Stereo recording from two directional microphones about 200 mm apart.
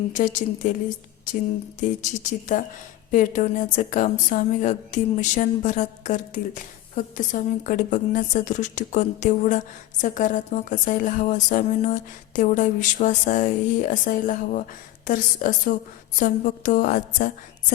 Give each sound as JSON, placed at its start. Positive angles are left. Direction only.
{"t": 0.1, "sound": "speech", "side_deg": 35}
{"t": 1.3, "sound": "a sound", "side_deg": 40}
{"t": 2.5, "sound": "speech", "side_deg": 40}